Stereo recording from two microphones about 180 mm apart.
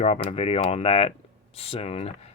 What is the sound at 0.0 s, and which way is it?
Speech, 35° left (ahead or behind).